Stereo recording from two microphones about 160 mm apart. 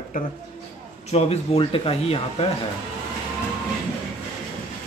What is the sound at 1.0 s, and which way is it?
Speech, 40° left (ahead or behind).